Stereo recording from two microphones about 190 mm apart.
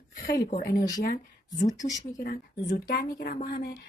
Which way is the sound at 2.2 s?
45° left (ahead or behind).